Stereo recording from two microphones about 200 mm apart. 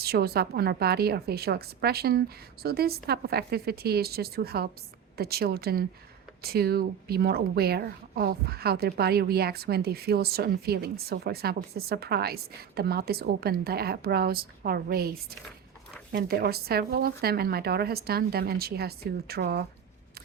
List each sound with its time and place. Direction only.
0.0 s speech: 50° right (ahead or behind)
16.1 s speech: 50° right (ahead or behind)